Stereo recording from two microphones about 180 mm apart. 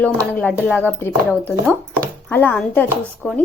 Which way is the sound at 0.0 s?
10° left (ahead or behind).